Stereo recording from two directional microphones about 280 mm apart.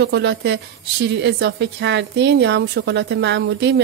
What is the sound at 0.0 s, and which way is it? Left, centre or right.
A woman's voice, right.